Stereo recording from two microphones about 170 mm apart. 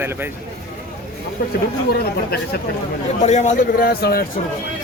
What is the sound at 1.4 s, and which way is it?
Speech, 60° left (ahead or behind).